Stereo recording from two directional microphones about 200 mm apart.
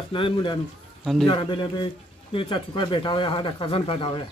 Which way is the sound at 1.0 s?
Centre (ahead or behind).